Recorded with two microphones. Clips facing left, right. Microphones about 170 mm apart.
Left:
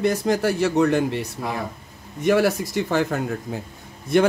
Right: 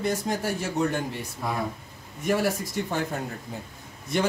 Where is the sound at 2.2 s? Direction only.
90° left.